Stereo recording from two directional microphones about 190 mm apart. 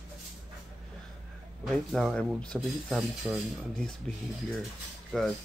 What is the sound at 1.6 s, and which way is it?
Speech, centre (ahead or behind).